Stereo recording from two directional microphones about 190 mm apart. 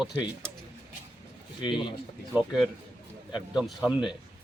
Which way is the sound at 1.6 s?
25° left (ahead or behind).